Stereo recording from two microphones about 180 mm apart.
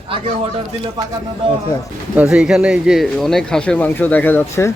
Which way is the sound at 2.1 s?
5° right (ahead or behind).